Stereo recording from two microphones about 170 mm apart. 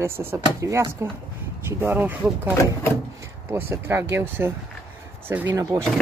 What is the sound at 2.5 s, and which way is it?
Speech, 15° left (ahead or behind).